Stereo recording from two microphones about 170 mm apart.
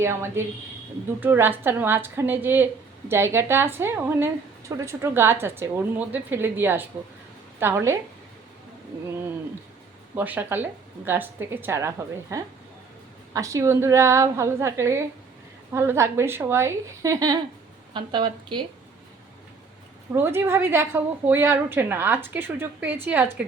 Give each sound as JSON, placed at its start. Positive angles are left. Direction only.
{"t": 0.0, "sound": "a woman's voice", "side_deg": -15}
{"t": 10.2, "sound": "a woman's voice", "side_deg": -10}
{"t": 20.1, "sound": "a woman's voice", "side_deg": -15}